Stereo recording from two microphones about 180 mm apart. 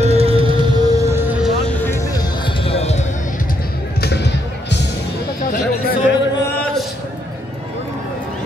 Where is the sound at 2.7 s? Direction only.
35° left (ahead or behind).